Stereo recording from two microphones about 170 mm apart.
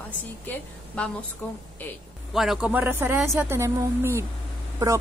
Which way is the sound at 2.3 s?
Centre (ahead or behind).